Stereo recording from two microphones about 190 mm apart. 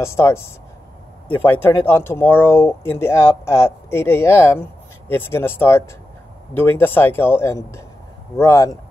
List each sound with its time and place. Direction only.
0.0 s speech: 15° left (ahead or behind)